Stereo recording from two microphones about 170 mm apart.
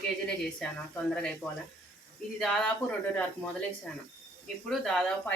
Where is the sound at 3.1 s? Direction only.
5° left (ahead or behind).